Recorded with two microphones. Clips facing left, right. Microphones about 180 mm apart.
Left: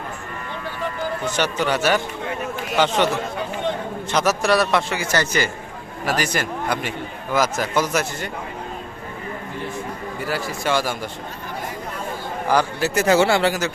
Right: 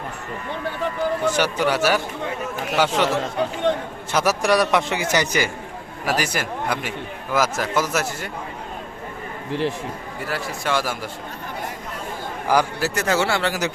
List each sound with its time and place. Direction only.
1.4 s a man's voice: 10° right (ahead or behind)
4.1 s a man's voice: 10° right (ahead or behind)
9.5 s a man's voice: 90° right
10.2 s speech: centre (ahead or behind)
12.5 s a man's voice: 10° right (ahead or behind)
12.9 s speech: 5° left (ahead or behind)
13.1 s speech: 15° left (ahead or behind)